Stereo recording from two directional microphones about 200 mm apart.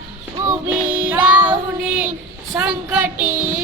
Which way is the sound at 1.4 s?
5° right (ahead or behind).